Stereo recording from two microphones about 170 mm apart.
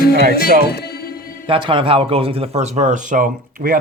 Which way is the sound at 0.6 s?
70° left (ahead or behind).